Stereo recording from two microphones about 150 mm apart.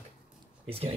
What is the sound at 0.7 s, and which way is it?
Speech, 40° right (ahead or behind).